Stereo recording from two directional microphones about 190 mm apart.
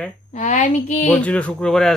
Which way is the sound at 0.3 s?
40° left (ahead or behind).